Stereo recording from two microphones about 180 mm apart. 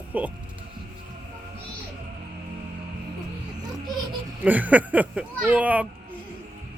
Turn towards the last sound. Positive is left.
turn(degrees=-10)  # may be behind; listen again after turning